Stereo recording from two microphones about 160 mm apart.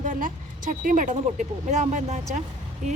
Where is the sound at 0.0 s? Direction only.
55° right (ahead or behind).